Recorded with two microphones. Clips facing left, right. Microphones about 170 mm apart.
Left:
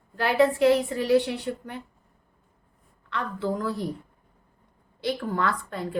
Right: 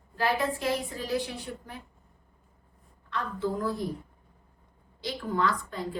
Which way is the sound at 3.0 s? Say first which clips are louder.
Left 2 dB; 70° left (ahead or behind).